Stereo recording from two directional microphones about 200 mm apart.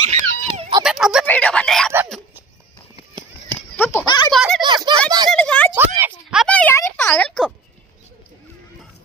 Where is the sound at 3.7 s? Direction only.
10° left (ahead or behind).